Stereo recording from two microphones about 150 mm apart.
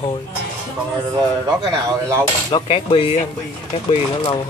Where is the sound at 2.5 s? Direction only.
35° left (ahead or behind).